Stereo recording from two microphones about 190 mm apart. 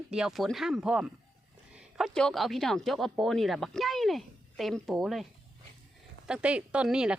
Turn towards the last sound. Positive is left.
turn(degrees=-5)  # may be behind; listen again after turning